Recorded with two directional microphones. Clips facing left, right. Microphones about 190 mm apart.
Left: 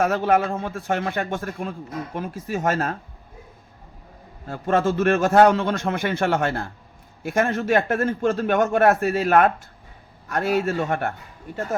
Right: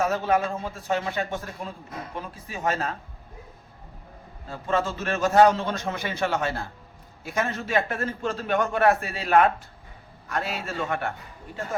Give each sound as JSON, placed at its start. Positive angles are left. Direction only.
{"t": 0.0, "sound": "a man's voice", "side_deg": 60}
{"t": 4.4, "sound": "a man's voice", "side_deg": 55}